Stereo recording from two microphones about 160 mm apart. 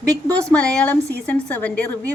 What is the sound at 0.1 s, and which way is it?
Speech, 20° right (ahead or behind).